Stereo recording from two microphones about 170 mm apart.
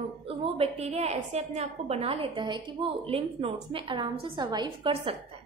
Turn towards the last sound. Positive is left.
turn(degrees=-30)  # may be behind; listen again after turning